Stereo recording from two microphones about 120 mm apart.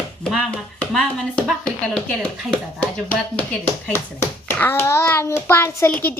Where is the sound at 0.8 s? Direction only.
5° left (ahead or behind).